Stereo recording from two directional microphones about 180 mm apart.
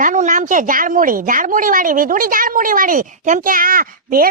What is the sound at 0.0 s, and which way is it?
Speech, 45° right (ahead or behind).